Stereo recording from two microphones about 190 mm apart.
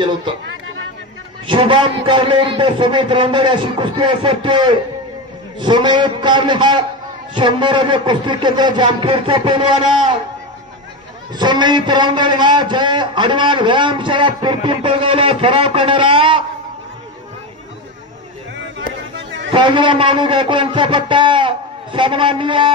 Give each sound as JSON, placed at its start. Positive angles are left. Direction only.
{"t": 1.5, "sound": "a man's voice", "side_deg": -25}
{"t": 11.3, "sound": "a man's voice", "side_deg": -25}
{"t": 19.5, "sound": "a man's voice", "side_deg": -25}